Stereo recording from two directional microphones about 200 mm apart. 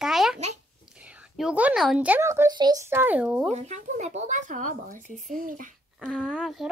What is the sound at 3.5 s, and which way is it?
Speech, 35° right (ahead or behind).